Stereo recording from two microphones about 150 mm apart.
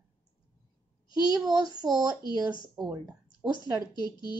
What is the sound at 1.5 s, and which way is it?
Speech, 25° right (ahead or behind).